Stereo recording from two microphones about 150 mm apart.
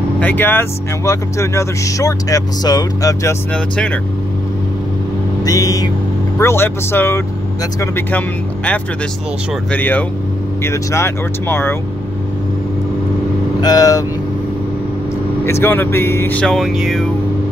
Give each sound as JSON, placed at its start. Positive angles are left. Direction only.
{"t": 0.2, "sound": "speech", "side_deg": 10}
{"t": 3.5, "sound": "speech", "side_deg": 5}
{"t": 5.4, "sound": "speech", "side_deg": 20}
{"t": 9.7, "sound": "speech", "side_deg": 10}
{"t": 13.6, "sound": "speech", "side_deg": 25}
{"t": 15.4, "sound": "speech", "side_deg": 15}